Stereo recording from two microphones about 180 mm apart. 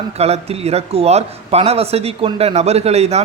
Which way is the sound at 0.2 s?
35° right (ahead or behind).